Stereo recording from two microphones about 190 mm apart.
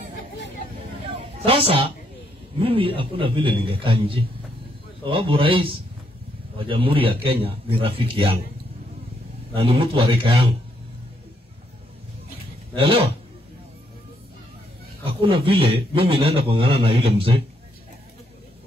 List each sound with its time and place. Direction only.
1.0 s a sound: 30° right (ahead or behind)
2.6 s a man's voice: 30° right (ahead or behind)
9.5 s a man's voice: 30° right (ahead or behind)
15.0 s a man's voice: 25° right (ahead or behind)